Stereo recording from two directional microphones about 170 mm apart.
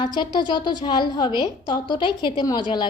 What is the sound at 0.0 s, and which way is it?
A woman's voice, 25° left (ahead or behind).